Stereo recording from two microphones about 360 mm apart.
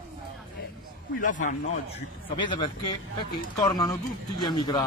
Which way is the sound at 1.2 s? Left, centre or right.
Left.